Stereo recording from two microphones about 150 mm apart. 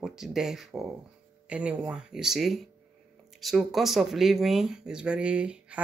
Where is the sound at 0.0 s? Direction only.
Centre (ahead or behind).